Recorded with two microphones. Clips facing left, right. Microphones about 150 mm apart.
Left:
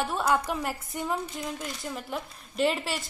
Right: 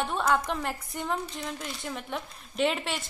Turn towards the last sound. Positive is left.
turn(degrees=0)  # may be behind; listen again after turning